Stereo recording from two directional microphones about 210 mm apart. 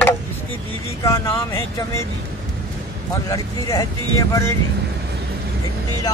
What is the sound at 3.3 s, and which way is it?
Speech, 15° left (ahead or behind).